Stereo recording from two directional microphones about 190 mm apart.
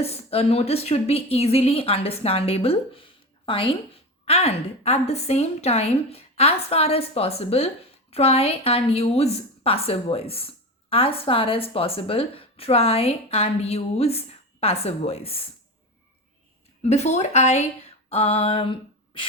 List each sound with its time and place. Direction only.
0.0 s a woman's voice: 30° left (ahead or behind)
16.8 s a woman's voice: 35° left (ahead or behind)
18.1 s a sound: 30° left (ahead or behind)